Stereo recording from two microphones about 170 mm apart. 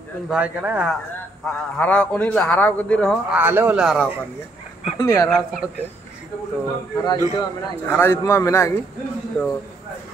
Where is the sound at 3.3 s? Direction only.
10° right (ahead or behind).